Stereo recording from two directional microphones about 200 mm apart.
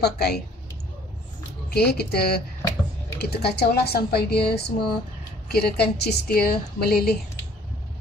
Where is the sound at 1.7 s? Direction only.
55° left (ahead or behind).